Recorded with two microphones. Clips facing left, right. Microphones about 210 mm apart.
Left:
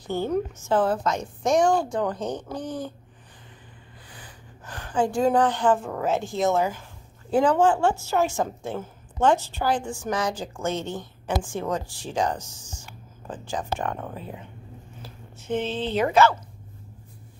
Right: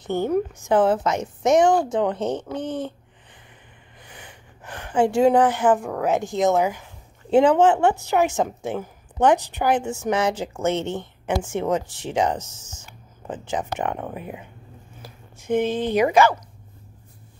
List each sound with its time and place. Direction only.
0.0 s a woman's voice: 20° right (ahead or behind)
4.2 s a woman's voice: 20° right (ahead or behind)